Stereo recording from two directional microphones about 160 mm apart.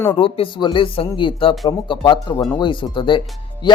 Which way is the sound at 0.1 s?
35° left (ahead or behind).